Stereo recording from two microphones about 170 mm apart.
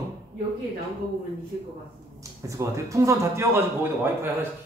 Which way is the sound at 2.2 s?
20° right (ahead or behind).